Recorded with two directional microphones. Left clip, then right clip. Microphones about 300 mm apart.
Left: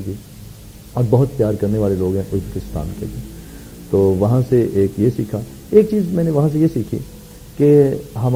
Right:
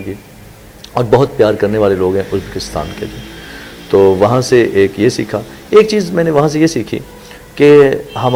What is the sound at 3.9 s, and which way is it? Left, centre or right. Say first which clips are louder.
Speech: right 7 dB; right.